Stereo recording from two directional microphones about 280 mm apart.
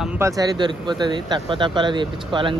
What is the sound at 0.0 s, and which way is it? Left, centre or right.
Speech, centre.